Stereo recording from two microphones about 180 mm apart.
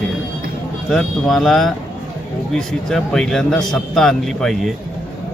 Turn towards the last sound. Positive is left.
turn(degrees=0)  # may be behind; listen again after turning